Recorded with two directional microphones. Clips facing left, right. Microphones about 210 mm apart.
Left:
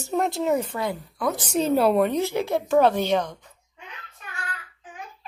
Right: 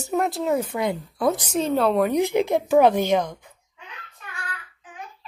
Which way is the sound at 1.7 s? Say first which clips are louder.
Left 1 dB; 5° left (ahead or behind).